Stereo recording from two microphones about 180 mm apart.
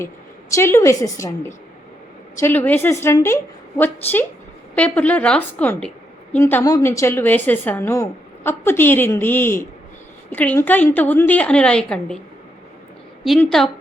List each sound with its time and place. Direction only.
0.5 s a woman's voice: 15° left (ahead or behind)
2.4 s a woman's voice: 10° left (ahead or behind)
13.2 s a woman's voice: centre (ahead or behind)